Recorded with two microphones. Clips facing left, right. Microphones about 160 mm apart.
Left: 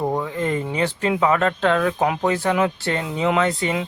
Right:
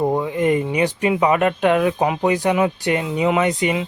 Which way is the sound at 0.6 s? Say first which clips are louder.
Right 3 dB; 15° right (ahead or behind).